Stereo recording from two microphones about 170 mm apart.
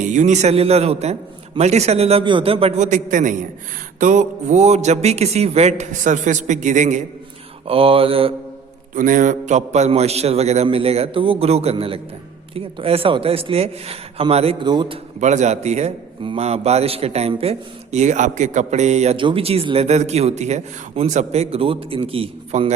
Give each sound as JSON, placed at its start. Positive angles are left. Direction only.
{"t": 0.0, "sound": "a man's voice", "side_deg": -45}
{"t": 7.7, "sound": "a man's voice", "side_deg": -35}
{"t": 9.0, "sound": "a man's voice", "side_deg": -50}
{"t": 15.2, "sound": "a man's voice", "side_deg": -45}